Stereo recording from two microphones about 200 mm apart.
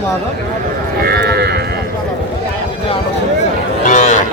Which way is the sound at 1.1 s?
55° right (ahead or behind).